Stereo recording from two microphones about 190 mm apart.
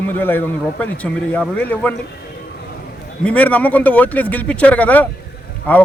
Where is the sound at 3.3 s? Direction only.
5° left (ahead or behind).